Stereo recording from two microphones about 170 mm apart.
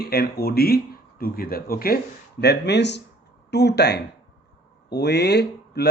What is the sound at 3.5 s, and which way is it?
Speech, 80° left.